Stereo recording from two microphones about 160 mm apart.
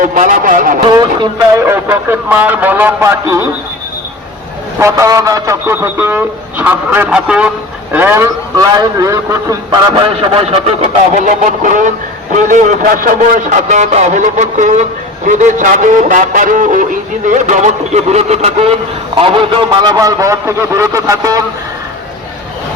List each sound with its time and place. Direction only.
0.0 s a man's voice: 55° right (ahead or behind)
0.9 s a man's voice: 25° right (ahead or behind)
4.8 s a man's voice: 20° right (ahead or behind)